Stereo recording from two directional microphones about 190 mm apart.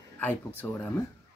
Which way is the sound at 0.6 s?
10° left (ahead or behind).